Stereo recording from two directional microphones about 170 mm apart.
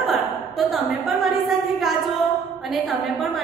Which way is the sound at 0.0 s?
Centre (ahead or behind).